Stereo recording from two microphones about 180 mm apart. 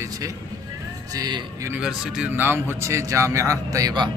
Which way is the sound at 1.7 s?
5° right (ahead or behind).